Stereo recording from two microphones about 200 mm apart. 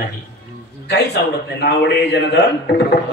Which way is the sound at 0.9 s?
55° left (ahead or behind).